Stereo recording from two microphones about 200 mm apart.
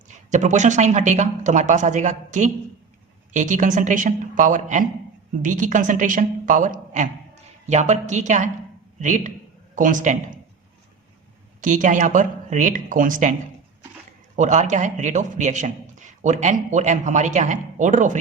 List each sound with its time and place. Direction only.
0.3 s a man's voice: 35° right (ahead or behind)
11.6 s a man's voice: 40° right (ahead or behind)
14.3 s a man's voice: 35° right (ahead or behind)